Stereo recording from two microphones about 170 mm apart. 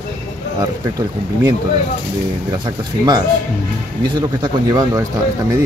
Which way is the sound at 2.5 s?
25° right (ahead or behind).